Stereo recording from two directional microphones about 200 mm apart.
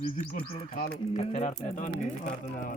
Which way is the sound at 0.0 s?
40° left (ahead or behind).